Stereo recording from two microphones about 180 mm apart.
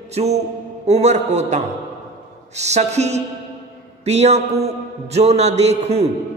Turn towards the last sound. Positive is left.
turn(degrees=-35)  # may be behind; listen again after turning